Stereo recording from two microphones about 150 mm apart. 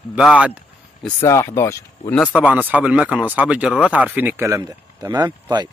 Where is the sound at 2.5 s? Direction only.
10° right (ahead or behind).